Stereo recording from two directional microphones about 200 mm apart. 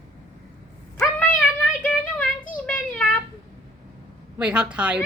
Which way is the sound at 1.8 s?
5° left (ahead or behind).